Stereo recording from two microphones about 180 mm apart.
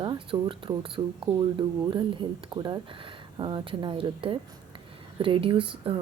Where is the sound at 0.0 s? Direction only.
25° right (ahead or behind).